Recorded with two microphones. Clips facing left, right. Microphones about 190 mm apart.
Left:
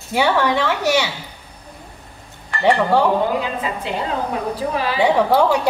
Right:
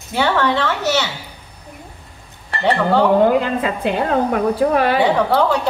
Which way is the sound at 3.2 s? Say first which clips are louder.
Right 6 dB; 55° right (ahead or behind).